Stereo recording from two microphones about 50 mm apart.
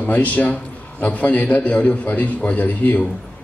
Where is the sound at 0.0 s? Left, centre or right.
Left.